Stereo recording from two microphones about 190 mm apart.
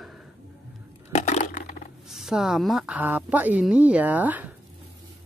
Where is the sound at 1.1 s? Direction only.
35° left (ahead or behind).